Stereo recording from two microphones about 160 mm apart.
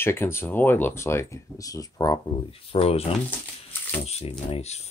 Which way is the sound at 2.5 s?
35° left (ahead or behind).